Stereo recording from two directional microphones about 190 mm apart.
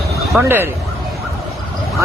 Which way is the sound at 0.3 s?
10° right (ahead or behind).